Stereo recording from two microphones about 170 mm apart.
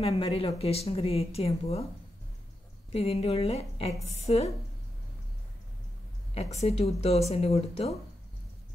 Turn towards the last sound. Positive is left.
turn(degrees=35)  # may be behind; listen again after turning